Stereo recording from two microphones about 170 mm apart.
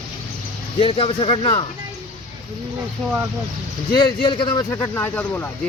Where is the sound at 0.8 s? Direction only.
35° left (ahead or behind).